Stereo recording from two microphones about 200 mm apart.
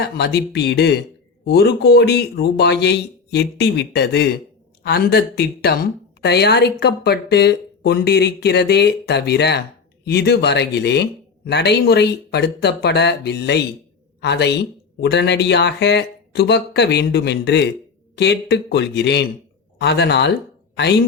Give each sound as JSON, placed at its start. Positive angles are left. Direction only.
{"t": 0.0, "sound": "a woman's voice", "side_deg": 55}